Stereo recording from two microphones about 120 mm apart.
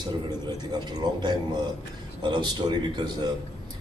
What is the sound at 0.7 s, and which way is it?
A man's voice, 35° right (ahead or behind).